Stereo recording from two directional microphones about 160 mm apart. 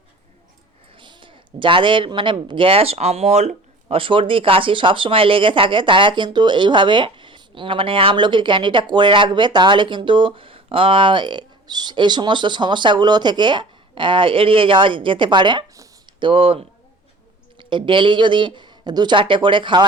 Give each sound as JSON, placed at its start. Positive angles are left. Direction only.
{"t": 0.9, "sound": "a child's voice", "side_deg": -30}
{"t": 16.3, "sound": "a child's voice", "side_deg": -35}